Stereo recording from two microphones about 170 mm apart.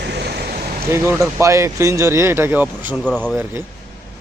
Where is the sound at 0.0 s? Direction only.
80° right.